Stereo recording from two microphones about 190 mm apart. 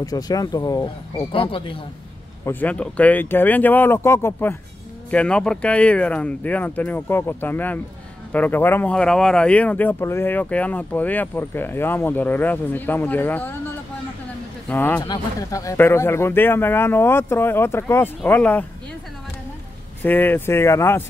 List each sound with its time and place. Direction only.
0.0 s speech: 20° left (ahead or behind)
2.4 s speech: 10° left (ahead or behind)
14.7 s speech: 10° left (ahead or behind)
20.0 s speech: 10° left (ahead or behind)